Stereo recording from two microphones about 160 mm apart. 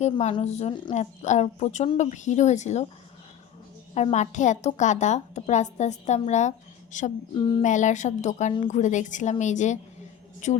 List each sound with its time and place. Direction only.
0.0 s a woman's voice: 45° left (ahead or behind)
3.9 s a woman's voice: 45° left (ahead or behind)
7.3 s a sound: 30° left (ahead or behind)
7.6 s a woman's voice: 50° left (ahead or behind)